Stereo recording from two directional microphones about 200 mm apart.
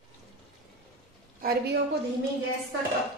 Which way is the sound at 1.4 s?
45° right (ahead or behind).